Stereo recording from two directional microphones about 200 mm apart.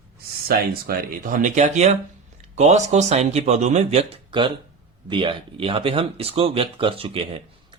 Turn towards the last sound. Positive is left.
turn(degrees=-30)  # may be behind; listen again after turning